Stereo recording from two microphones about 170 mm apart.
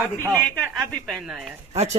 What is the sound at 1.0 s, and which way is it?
Speech, centre (ahead or behind).